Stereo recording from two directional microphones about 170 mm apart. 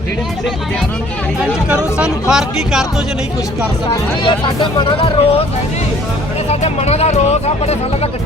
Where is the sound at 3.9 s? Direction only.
30° left (ahead or behind).